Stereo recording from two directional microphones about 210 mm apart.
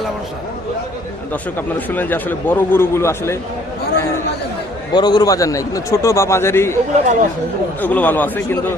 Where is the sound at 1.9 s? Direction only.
10° left (ahead or behind).